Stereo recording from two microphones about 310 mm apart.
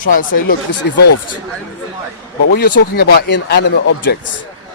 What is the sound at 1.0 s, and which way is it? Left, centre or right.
Speech, left.